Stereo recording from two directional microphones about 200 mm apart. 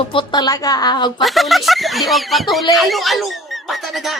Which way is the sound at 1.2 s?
Centre (ahead or behind).